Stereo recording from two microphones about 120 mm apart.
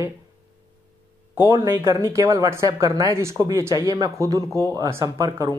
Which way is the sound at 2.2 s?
35° right (ahead or behind).